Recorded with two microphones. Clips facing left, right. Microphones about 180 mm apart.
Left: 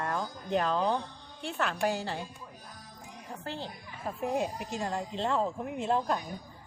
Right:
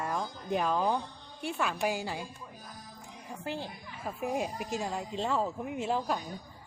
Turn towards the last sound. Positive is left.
turn(degrees=-10)  # may be behind; listen again after turning